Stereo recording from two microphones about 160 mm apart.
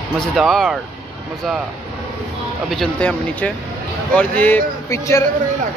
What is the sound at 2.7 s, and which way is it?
Speech, 5° left (ahead or behind).